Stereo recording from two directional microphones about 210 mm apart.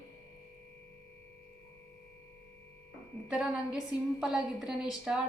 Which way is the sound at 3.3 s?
5° right (ahead or behind).